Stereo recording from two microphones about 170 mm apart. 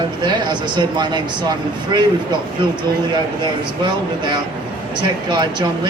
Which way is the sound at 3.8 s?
25° right (ahead or behind).